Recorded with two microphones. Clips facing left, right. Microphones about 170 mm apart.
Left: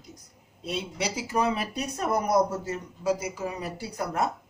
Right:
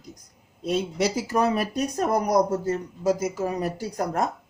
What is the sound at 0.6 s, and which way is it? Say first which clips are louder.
Speech: right 7 dB; 45° right (ahead or behind).